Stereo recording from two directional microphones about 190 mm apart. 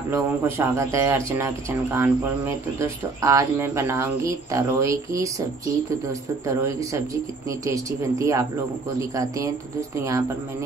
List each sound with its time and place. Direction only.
0.1 s speech: 15° right (ahead or behind)
6.4 s speech: 15° right (ahead or behind)